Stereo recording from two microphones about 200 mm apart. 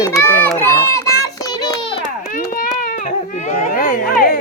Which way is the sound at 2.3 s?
45° left (ahead or behind).